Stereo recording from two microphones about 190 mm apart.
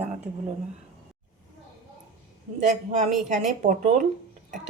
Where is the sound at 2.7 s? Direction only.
35° right (ahead or behind).